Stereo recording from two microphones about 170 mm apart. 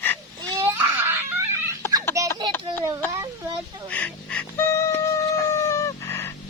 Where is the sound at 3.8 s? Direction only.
10° left (ahead or behind).